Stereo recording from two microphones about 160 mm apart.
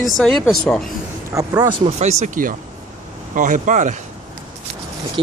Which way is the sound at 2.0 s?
45° right (ahead or behind).